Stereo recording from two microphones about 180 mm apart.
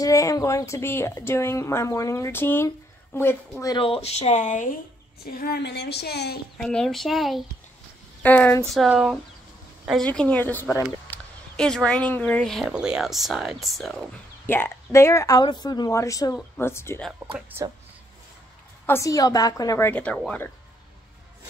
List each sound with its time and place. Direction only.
0.0 s speech: 20° left (ahead or behind)
3.7 s speech: 30° left (ahead or behind)
5.2 s a woman's voice: 60° left (ahead or behind)
6.6 s speech: 5° left (ahead or behind)
8.6 s speech: centre (ahead or behind)
14.4 s speech: 10° left (ahead or behind)
17.3 s speech: 10° right (ahead or behind)
18.9 s speech: 15° left (ahead or behind)